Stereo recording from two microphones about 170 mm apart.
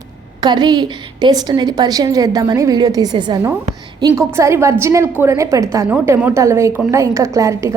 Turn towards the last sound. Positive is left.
turn(degrees=-20)  # may be behind; listen again after turning